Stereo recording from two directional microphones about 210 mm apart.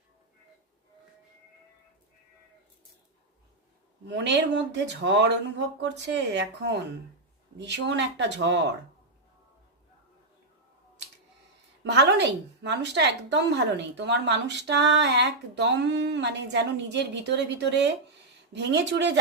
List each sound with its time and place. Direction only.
4.1 s a woman's voice: 55° right (ahead or behind)
11.8 s a woman's voice: 55° right (ahead or behind)